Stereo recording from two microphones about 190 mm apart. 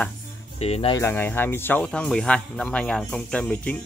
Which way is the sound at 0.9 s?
10° left (ahead or behind).